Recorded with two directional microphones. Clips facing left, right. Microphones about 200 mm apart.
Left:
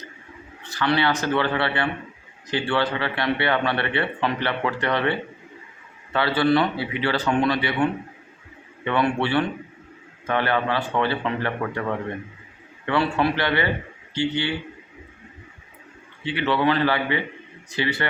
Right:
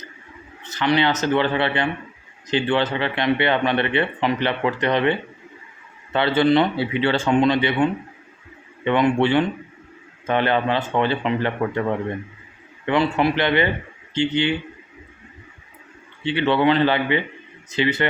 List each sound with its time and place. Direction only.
0.6 s speech: 20° right (ahead or behind)
6.1 s speech: 20° right (ahead or behind)
16.2 s speech: 25° right (ahead or behind)